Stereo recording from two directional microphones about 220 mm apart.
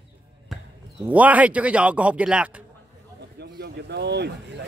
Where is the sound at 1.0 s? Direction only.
5° right (ahead or behind).